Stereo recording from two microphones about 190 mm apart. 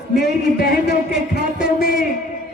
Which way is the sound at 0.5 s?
60° left (ahead or behind).